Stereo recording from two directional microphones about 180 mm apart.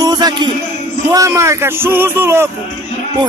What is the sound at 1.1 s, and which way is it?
A man's voice, 15° right (ahead or behind).